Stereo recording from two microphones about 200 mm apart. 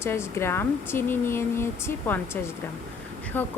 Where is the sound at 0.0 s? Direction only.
10° left (ahead or behind).